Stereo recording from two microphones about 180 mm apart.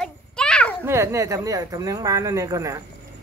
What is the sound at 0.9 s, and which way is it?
Speech, 15° right (ahead or behind).